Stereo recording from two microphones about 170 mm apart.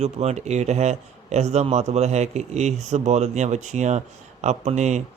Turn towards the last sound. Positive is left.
turn(degrees=-40)  # may be behind; listen again after turning